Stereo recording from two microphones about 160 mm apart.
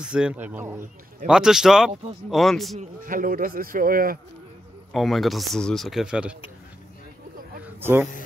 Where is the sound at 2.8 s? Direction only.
60° right (ahead or behind).